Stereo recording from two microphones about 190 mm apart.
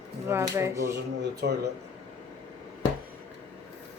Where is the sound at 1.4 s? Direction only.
60° right (ahead or behind).